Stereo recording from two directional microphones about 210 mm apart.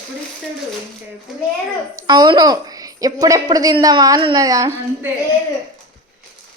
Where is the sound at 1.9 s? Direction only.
20° right (ahead or behind).